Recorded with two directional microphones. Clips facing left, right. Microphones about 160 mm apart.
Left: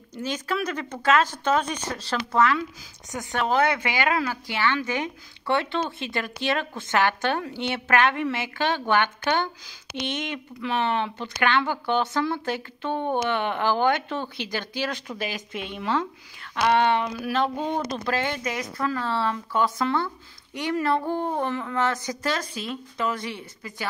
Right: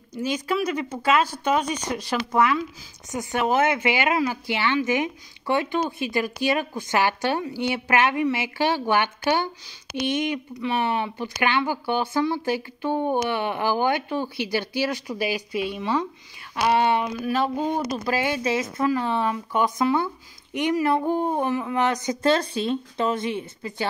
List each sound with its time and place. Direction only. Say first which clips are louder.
0.1 s speech: right 3 dB; 10° right (ahead or behind)
10.7 s speech: even; 10° right (ahead or behind)
17.2 s a sound: right 2 dB; 5° right (ahead or behind)
17.9 s speech: right 2 dB; 5° right (ahead or behind)
18.4 s speech: right 5 dB; 25° right (ahead or behind)